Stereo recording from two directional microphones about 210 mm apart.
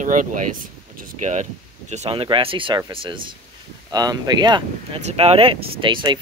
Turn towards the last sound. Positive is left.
turn(degrees=-20)  # may be behind; listen again after turning